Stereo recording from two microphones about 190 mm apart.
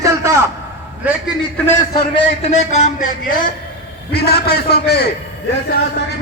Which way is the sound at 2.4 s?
35° left (ahead or behind).